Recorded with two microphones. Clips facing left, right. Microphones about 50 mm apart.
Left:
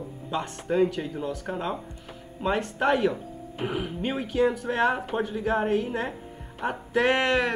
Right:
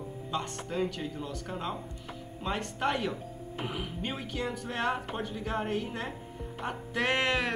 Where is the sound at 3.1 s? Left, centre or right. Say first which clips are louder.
Left 4 dB; left.